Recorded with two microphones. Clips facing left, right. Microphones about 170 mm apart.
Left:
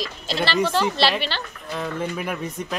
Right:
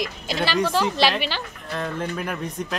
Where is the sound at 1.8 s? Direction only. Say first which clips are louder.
Even; 5° left (ahead or behind).